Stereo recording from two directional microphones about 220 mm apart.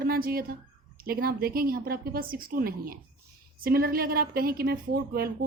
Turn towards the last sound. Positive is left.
turn(degrees=-45)  # may be behind; listen again after turning